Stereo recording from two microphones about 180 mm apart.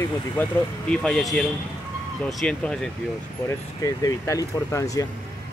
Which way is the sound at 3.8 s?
20° left (ahead or behind).